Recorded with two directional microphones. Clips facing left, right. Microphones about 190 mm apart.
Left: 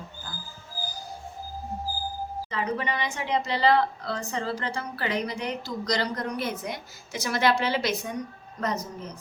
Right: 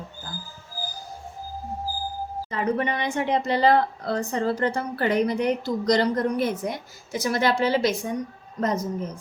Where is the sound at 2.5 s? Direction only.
50° right (ahead or behind).